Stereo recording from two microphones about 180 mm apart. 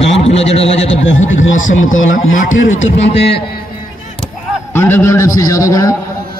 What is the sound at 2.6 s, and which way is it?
Speech, 40° left (ahead or behind).